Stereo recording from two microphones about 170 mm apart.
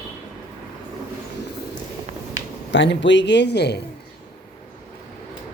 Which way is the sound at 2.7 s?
90° left.